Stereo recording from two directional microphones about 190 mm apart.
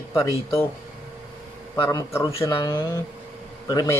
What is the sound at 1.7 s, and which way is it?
Speech, 20° left (ahead or behind).